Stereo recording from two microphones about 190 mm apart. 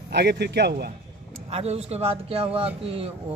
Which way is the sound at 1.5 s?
35° right (ahead or behind).